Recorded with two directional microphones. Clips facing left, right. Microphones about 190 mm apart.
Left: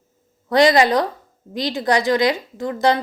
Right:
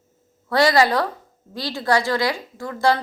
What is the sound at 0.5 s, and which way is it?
A woman's voice, 20° left (ahead or behind).